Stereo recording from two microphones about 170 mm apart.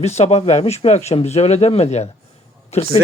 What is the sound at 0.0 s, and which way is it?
Speech, 40° left (ahead or behind).